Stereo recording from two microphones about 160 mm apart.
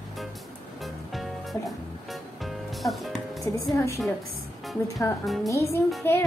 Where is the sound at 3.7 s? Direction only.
20° left (ahead or behind).